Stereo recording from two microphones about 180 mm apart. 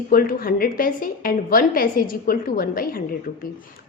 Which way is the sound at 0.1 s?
55° left (ahead or behind).